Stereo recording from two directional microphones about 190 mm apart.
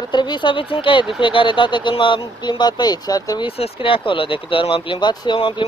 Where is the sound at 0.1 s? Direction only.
25° left (ahead or behind).